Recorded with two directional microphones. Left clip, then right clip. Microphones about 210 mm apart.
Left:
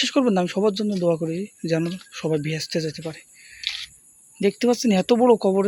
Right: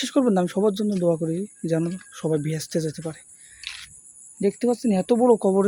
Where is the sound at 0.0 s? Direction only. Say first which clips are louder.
Left 1 dB; 5° right (ahead or behind).